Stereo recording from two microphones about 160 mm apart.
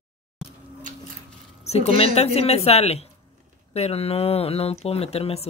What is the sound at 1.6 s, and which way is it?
Speech, 40° left (ahead or behind).